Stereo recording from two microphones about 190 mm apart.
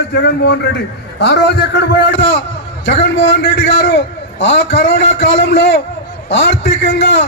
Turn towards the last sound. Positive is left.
turn(degrees=65)  # may be behind; listen again after turning